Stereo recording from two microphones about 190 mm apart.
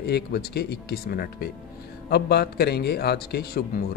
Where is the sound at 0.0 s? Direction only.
55° left (ahead or behind).